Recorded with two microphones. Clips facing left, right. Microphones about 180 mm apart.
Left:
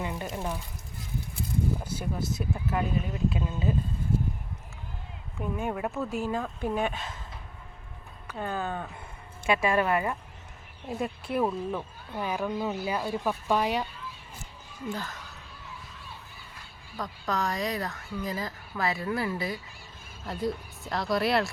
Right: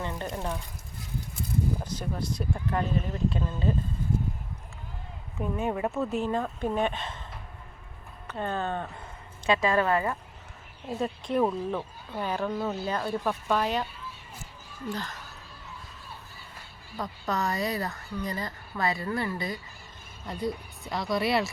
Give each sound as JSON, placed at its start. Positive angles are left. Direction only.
{"t": 0.0, "sound": "speech", "side_deg": 10}
{"t": 1.8, "sound": "speech", "side_deg": 10}
{"t": 5.5, "sound": "speech", "side_deg": 0}
{"t": 8.3, "sound": "speech", "side_deg": 10}
{"t": 14.8, "sound": "speech", "side_deg": 5}
{"t": 17.0, "sound": "speech", "side_deg": 0}